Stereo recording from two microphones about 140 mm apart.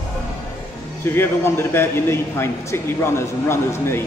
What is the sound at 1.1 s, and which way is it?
A man's voice, 15° left (ahead or behind).